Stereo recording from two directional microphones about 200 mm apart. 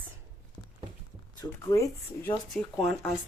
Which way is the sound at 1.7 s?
15° left (ahead or behind).